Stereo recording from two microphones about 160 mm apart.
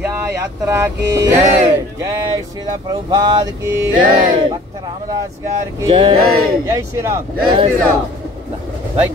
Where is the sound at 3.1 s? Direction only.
30° right (ahead or behind).